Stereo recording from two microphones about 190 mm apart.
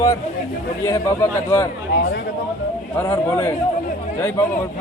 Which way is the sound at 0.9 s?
15° left (ahead or behind).